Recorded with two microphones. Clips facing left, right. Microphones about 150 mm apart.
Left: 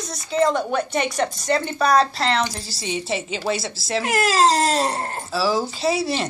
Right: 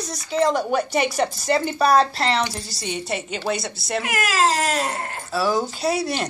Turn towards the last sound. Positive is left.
turn(degrees=0)  # may be behind; listen again after turning